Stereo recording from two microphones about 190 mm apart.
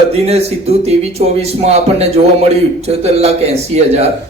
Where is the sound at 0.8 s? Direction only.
35° right (ahead or behind).